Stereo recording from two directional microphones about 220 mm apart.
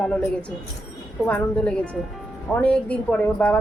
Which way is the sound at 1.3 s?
5° left (ahead or behind).